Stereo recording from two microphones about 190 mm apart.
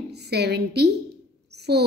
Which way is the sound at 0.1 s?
60° right (ahead or behind).